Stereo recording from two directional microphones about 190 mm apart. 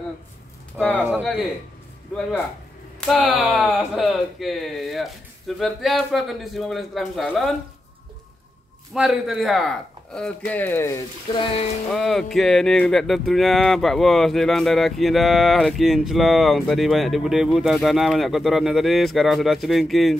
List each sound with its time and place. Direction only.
0.9 s speech: 10° right (ahead or behind)
3.1 s speech: centre (ahead or behind)
8.9 s speech: centre (ahead or behind)
11.3 s speech: 25° left (ahead or behind)
11.9 s speech: centre (ahead or behind)